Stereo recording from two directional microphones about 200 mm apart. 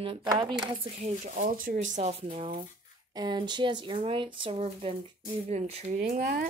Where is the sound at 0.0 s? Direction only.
25° right (ahead or behind).